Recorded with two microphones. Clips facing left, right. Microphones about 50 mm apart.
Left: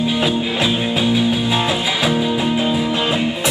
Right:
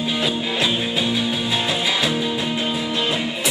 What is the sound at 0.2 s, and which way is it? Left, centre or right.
Music, centre.